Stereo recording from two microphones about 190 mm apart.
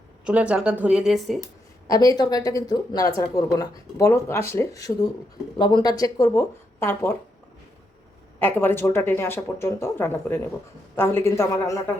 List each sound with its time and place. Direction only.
0.3 s speech: 5° right (ahead or behind)
1.9 s speech: 20° left (ahead or behind)
8.4 s speech: 10° left (ahead or behind)